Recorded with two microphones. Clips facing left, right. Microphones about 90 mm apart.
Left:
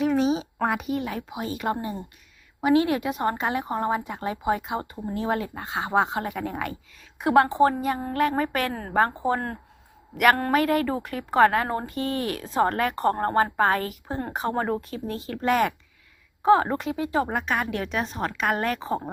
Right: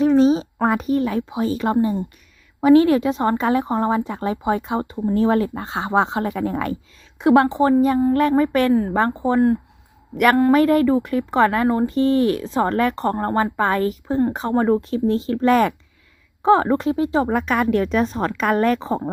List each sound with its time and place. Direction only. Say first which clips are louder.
0.0 s a sound: right 8 dB; 35° right (ahead or behind)
0.6 s a child's voice: right 8 dB; 35° right (ahead or behind)
2.6 s speech: right 8 dB; 40° right (ahead or behind); by 5.0 s 20° right (ahead or behind)
5.0 s speech: right 10 dB; 40° right (ahead or behind)
7.2 s a woman's voice: right 4 dB; 25° right (ahead or behind)
8.4 s speech: right 9 dB; 35° right (ahead or behind)
9.1 s a woman's voice: right 9 dB; 20° right (ahead or behind)
15.4 s speech: right 4 dB; 40° right (ahead or behind)
17.2 s speech: right 7 dB; 45° right (ahead or behind)